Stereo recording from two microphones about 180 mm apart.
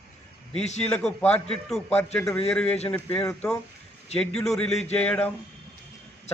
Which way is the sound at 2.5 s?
5° left (ahead or behind).